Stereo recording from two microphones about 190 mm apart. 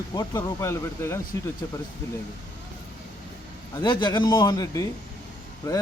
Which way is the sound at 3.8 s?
25° left (ahead or behind).